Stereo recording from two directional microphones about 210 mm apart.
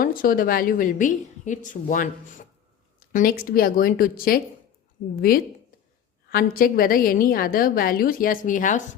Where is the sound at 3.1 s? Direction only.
45° left (ahead or behind).